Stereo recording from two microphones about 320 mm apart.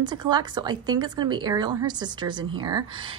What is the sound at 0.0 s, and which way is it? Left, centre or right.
A woman's voice, centre.